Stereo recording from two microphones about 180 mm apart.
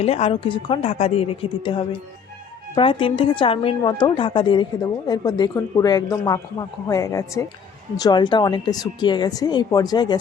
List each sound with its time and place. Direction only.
0.0 s a woman's voice: 35° left (ahead or behind)